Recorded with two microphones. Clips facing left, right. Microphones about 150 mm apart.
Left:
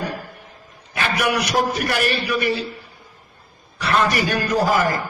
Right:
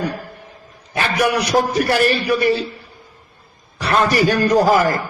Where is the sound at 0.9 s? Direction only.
35° right (ahead or behind).